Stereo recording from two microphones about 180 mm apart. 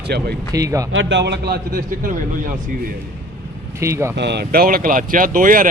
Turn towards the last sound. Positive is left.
turn(degrees=-50)  # may be behind; listen again after turning